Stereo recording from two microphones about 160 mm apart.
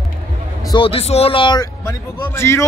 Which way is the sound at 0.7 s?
35° left (ahead or behind).